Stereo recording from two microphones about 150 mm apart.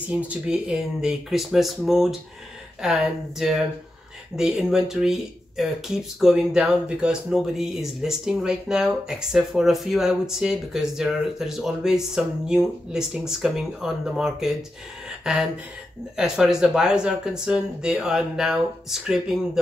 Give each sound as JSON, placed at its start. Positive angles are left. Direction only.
{"t": 0.3, "sound": "speech", "side_deg": -5}
{"t": 15.0, "sound": "a sound", "side_deg": -5}
{"t": 16.2, "sound": "speech", "side_deg": -5}